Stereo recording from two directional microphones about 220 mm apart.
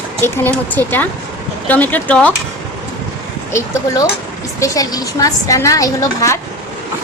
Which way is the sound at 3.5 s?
15° left (ahead or behind).